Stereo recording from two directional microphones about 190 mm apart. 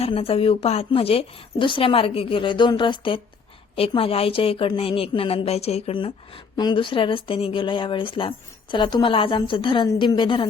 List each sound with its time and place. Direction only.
0.0 s a woman's voice: 30° left (ahead or behind)